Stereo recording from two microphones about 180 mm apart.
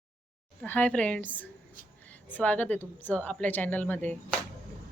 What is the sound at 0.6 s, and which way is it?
A woman's voice, 10° left (ahead or behind).